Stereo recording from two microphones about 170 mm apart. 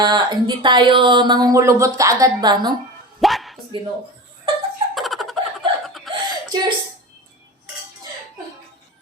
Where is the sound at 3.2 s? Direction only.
Centre (ahead or behind).